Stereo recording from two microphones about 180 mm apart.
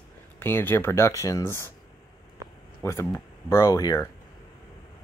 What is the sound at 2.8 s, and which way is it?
Speech, 15° left (ahead or behind).